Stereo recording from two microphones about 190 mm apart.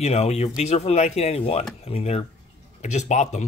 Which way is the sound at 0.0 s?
35° left (ahead or behind).